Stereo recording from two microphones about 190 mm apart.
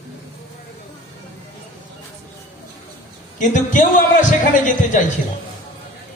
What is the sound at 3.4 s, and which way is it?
A man's voice, 45° left (ahead or behind).